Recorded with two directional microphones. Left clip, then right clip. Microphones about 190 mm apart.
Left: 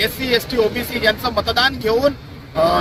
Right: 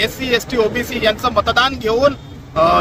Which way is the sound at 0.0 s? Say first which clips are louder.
Right 1 dB; 30° right (ahead or behind).